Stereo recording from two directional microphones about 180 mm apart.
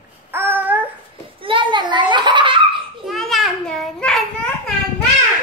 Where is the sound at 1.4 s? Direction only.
30° right (ahead or behind).